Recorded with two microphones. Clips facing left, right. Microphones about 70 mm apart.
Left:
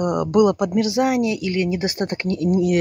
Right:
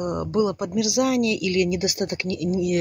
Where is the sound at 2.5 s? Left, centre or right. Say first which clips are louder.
Left 5 dB; left.